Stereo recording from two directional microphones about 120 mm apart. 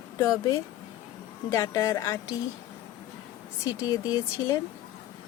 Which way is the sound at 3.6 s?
30° left (ahead or behind).